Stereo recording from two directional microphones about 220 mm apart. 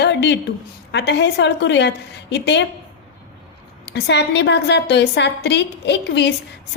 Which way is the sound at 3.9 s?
50° left (ahead or behind).